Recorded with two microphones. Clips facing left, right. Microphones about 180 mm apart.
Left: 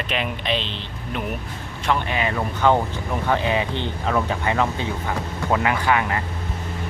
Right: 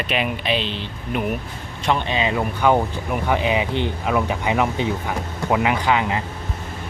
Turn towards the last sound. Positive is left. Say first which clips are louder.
# right 1 dB
turn(degrees=-20)  # may be behind; listen again after turning